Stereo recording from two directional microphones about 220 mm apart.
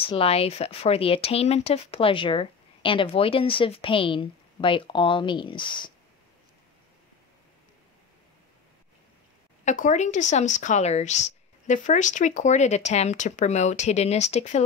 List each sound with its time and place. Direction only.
0.0 s speech: 25° left (ahead or behind)
9.7 s a woman's voice: 35° left (ahead or behind)